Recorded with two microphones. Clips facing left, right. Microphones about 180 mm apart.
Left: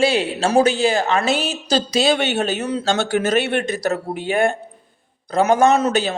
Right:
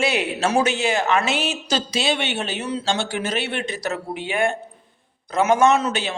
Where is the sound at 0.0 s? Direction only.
30° left (ahead or behind).